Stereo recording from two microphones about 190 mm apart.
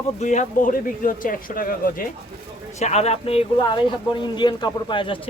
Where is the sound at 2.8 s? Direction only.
35° left (ahead or behind).